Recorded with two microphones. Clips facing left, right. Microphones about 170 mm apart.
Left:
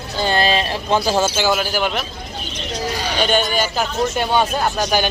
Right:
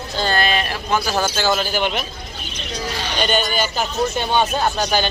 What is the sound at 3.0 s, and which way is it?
Speech, 5° left (ahead or behind).